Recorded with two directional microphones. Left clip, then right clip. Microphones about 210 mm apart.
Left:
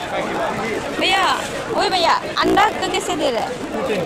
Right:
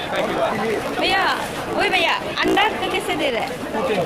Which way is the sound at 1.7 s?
15° left (ahead or behind).